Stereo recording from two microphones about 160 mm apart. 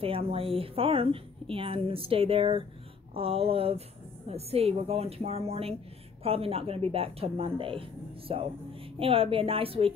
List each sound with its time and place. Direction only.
0.0 s a woman's voice: 35° right (ahead or behind)